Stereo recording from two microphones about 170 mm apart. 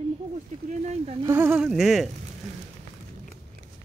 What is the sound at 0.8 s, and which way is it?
Speech, 40° right (ahead or behind).